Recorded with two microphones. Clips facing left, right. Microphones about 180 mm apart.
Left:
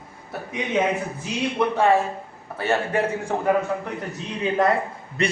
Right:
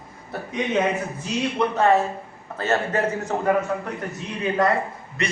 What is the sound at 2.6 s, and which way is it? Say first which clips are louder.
Speech: even; 10° left (ahead or behind).